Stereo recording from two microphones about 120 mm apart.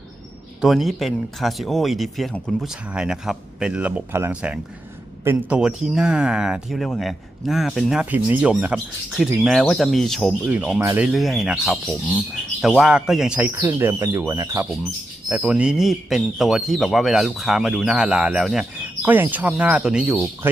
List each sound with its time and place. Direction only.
0.6 s speech: centre (ahead or behind)
2.6 s speech: 5° right (ahead or behind)
5.5 s speech: 5° right (ahead or behind)
8.1 s speech: 15° right (ahead or behind)
9.1 s speech: centre (ahead or behind)
10.5 s speech: 10° right (ahead or behind)
11.1 s speech: centre (ahead or behind); by 14.7 s 25° right (ahead or behind)
15.3 s speech: 10° right (ahead or behind)
19.0 s speech: 15° right (ahead or behind)
20.4 s speech: 20° right (ahead or behind)